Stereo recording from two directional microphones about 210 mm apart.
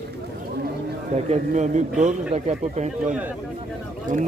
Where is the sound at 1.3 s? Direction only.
35° right (ahead or behind).